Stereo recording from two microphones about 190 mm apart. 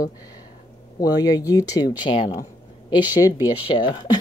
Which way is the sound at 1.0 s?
20° left (ahead or behind).